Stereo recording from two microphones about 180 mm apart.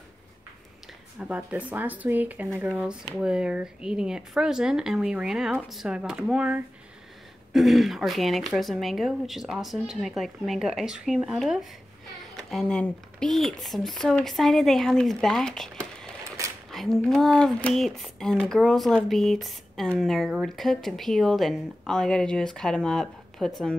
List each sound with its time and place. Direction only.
1.2 s speech: 5° right (ahead or behind)
16.3 s a sound: 20° right (ahead or behind)
16.7 s speech: centre (ahead or behind)